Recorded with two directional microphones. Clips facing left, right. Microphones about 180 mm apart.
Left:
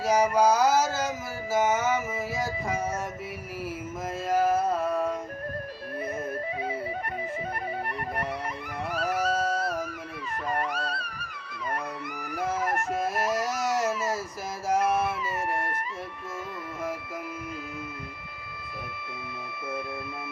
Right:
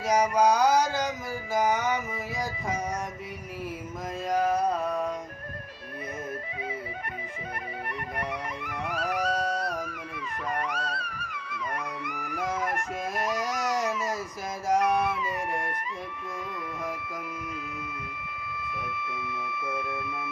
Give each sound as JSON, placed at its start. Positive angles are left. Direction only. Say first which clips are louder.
{"t": 0.0, "sound": "mantra", "louder": "left 1 dB", "side_deg": 0}
{"t": 4.3, "sound": "music", "louder": "left 1 dB", "side_deg": 5}
{"t": 8.6, "sound": "music", "louder": "left 2 dB", "side_deg": 40}
{"t": 9.1, "sound": "music", "louder": "left 1 dB", "side_deg": 0}
{"t": 10.5, "sound": "music", "louder": "left 2 dB", "side_deg": 35}
{"t": 13.1, "sound": "baby cry", "louder": "left 2 dB", "side_deg": 0}
{"t": 14.7, "sound": "music", "louder": "right 1 dB", "side_deg": 0}
{"t": 18.9, "sound": "a sound", "louder": "right 4 dB", "side_deg": 35}